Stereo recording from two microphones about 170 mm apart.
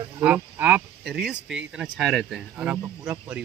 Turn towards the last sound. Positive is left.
turn(degrees=-5)  # may be behind; listen again after turning